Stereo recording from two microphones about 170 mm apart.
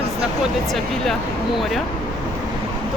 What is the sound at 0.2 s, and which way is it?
Speech, centre (ahead or behind).